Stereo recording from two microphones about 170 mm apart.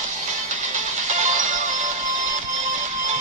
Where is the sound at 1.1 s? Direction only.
45° right (ahead or behind).